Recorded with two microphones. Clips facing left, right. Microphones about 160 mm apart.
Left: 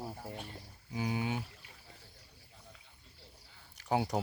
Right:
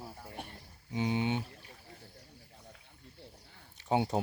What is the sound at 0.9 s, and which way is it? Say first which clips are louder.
Speech: right 4 dB; 25° right (ahead or behind).